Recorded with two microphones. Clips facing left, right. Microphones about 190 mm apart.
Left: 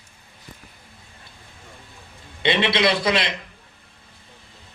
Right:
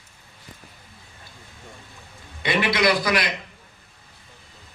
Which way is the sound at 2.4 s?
25° left (ahead or behind).